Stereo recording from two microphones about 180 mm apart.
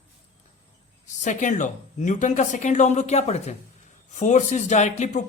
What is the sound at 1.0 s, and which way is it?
A man's voice, 40° left (ahead or behind).